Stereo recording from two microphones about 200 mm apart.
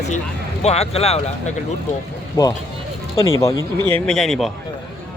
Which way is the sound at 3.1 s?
15° left (ahead or behind).